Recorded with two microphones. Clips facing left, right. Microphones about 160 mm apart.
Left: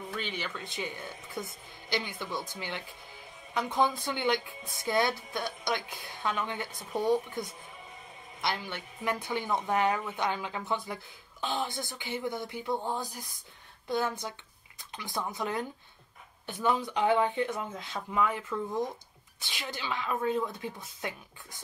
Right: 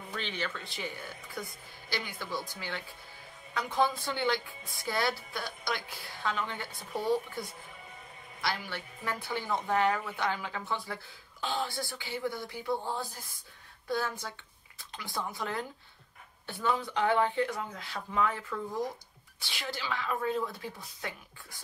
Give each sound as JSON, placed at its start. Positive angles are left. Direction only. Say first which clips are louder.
{"t": 0.1, "sound": "a woman's voice", "louder": "right 2 dB", "side_deg": 10}
{"t": 18.1, "sound": "speech", "louder": "left 1 dB", "side_deg": 10}
{"t": 18.4, "sound": "a woman's voice", "louder": "left 2 dB", "side_deg": 20}